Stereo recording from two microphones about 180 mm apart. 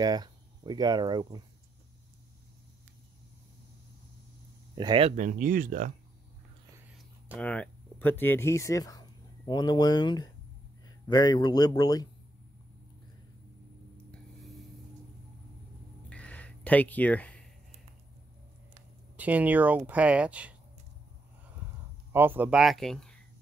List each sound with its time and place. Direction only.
0.0 s speech: 20° right (ahead or behind)
4.7 s speech: 25° right (ahead or behind)
5.1 s speech: 45° right (ahead or behind)
7.3 s speech: 5° left (ahead or behind)
14.4 s a sound: centre (ahead or behind)
16.1 s a sound: 5° left (ahead or behind)
19.1 s speech: 10° right (ahead or behind)
22.1 s speech: 10° right (ahead or behind)